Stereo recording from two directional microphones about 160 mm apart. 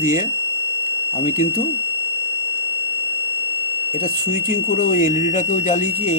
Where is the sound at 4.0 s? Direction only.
55° left (ahead or behind).